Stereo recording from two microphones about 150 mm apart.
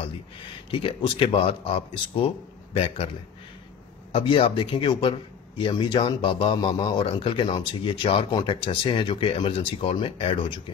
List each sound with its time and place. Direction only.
0.7 s speech: 35° left (ahead or behind)
4.1 s speech: 35° left (ahead or behind)